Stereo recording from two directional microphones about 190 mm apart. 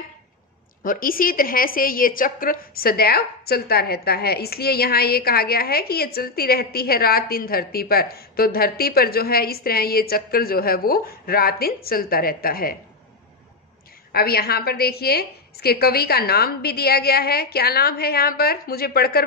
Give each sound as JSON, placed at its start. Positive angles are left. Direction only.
{"t": 0.8, "sound": "a woman's voice", "side_deg": 50}
{"t": 14.1, "sound": "a woman's voice", "side_deg": 55}